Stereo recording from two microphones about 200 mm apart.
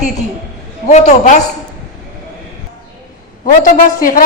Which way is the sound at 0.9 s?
35° left (ahead or behind).